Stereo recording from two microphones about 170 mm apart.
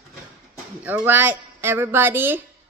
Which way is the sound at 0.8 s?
10° right (ahead or behind).